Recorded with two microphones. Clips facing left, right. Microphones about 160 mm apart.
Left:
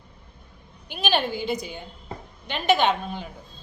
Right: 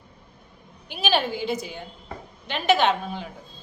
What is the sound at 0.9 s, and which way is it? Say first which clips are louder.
A woman's voice: right 1 dB; 5° right (ahead or behind).